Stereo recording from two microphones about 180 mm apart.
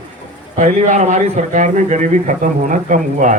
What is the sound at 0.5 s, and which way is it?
A man's voice, 40° right (ahead or behind).